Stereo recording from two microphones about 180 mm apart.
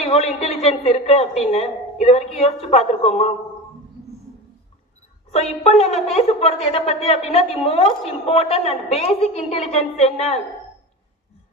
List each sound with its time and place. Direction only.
0.0 s a woman's voice: 35° left (ahead or behind)
5.3 s a woman's voice: 35° left (ahead or behind)